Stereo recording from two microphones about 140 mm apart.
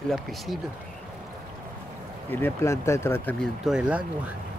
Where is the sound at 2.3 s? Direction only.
15° left (ahead or behind).